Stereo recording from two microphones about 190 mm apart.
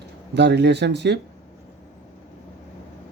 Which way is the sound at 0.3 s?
65° right (ahead or behind).